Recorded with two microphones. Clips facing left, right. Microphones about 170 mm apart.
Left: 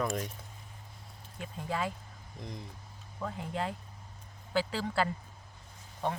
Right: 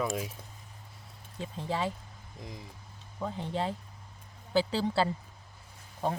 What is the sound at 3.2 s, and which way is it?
Speech, 25° right (ahead or behind).